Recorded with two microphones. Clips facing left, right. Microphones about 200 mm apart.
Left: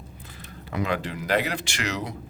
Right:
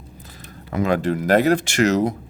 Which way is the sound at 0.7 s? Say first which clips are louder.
Right 8 dB; 45° right (ahead or behind).